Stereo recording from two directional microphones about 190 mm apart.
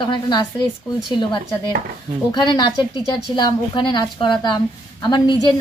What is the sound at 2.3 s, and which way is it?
A woman's voice, 25° left (ahead or behind).